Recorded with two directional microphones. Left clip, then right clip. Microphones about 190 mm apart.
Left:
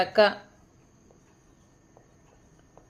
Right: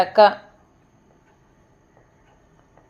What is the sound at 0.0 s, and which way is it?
Speech, 35° right (ahead or behind).